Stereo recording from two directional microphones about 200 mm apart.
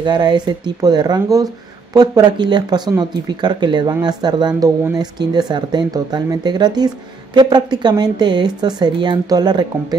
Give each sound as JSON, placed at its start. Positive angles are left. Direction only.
{"t": 0.0, "sound": "speech", "side_deg": -20}